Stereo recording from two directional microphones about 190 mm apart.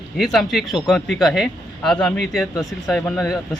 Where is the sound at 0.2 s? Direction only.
Centre (ahead or behind).